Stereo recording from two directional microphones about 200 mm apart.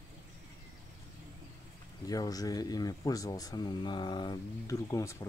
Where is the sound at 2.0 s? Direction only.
20° left (ahead or behind).